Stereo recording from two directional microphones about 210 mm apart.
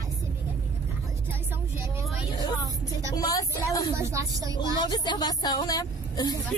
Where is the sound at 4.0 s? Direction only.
15° right (ahead or behind).